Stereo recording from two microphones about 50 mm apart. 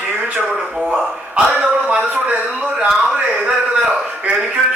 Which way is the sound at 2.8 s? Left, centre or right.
Centre.